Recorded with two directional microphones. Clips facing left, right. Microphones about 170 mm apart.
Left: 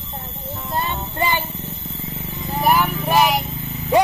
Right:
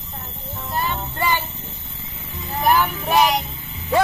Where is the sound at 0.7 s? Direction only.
20° left (ahead or behind).